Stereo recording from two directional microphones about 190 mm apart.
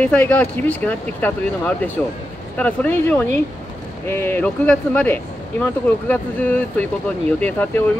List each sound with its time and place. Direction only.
0.0 s speech: 10° left (ahead or behind)